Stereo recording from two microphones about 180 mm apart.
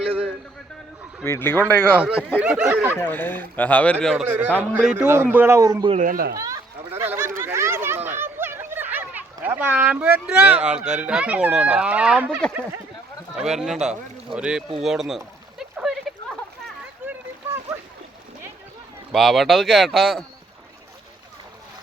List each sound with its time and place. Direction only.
1.2 s speech: 15° left (ahead or behind)
2.0 s a man's voice: 5° right (ahead or behind)
2.9 s a man's voice: 10° left (ahead or behind); by 5.9 s 20° right (ahead or behind)
5.9 s speech: 50° right (ahead or behind)
6.3 s a sound: 20° right (ahead or behind)
13.3 s speech: 5° right (ahead or behind)
15.7 s a sound: centre (ahead or behind)
17.1 s splash: 15° right (ahead or behind)
19.1 s speech: centre (ahead or behind)